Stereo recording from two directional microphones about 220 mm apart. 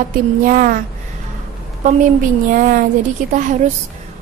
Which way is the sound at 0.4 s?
40° right (ahead or behind).